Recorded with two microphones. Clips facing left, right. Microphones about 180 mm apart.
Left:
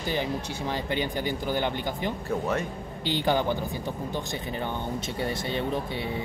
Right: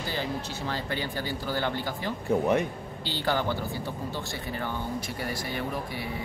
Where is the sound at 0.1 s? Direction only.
15° left (ahead or behind).